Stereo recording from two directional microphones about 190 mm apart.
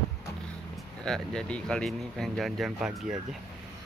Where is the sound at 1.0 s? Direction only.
5° left (ahead or behind).